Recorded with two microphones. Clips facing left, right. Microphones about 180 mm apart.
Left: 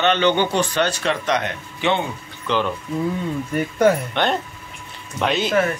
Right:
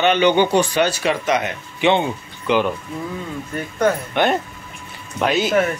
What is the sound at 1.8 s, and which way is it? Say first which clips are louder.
Speech: right 4 dB; 15° right (ahead or behind).